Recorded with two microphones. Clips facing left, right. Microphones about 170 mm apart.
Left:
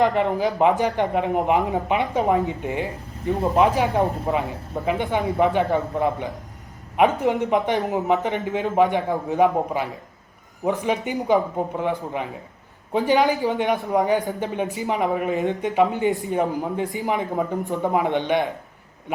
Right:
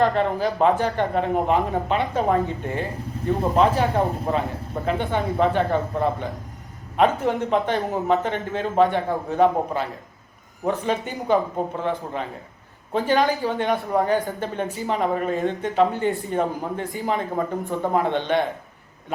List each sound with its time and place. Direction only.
0.0 s speech: 15° left (ahead or behind)